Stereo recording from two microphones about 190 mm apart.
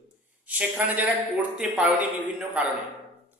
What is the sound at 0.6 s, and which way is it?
Speech, 10° right (ahead or behind).